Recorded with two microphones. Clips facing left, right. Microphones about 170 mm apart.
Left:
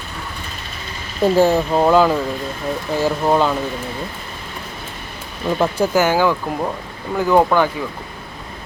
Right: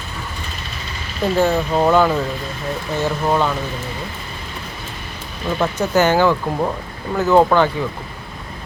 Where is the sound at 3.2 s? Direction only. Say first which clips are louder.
Left 2 dB; 15° left (ahead or behind).